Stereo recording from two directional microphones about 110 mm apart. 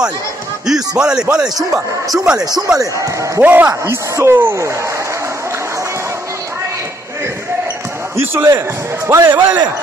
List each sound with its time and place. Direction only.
0.7 s speech: 5° right (ahead or behind)
3.3 s speech: 15° right (ahead or behind)
8.2 s speech: 25° right (ahead or behind)